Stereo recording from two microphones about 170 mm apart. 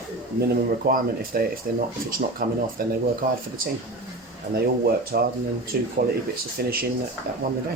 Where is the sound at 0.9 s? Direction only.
60° right (ahead or behind).